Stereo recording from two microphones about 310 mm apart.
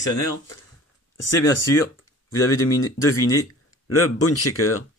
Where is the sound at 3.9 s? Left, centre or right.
Left.